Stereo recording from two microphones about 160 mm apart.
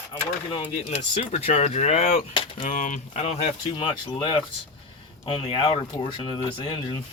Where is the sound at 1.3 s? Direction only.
45° left (ahead or behind).